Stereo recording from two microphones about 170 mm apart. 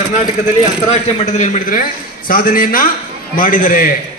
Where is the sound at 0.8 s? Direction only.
45° left (ahead or behind).